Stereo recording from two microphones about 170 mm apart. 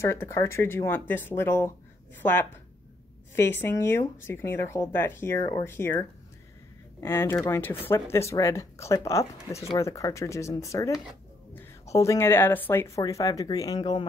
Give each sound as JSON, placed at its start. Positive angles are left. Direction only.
{"t": 0.0, "sound": "speech", "side_deg": 15}
{"t": 3.3, "sound": "speech", "side_deg": 15}